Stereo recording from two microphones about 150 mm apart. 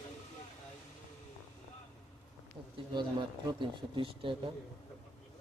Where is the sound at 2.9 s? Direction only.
30° right (ahead or behind).